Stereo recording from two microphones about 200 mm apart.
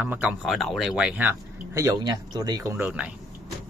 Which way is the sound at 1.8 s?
20° right (ahead or behind).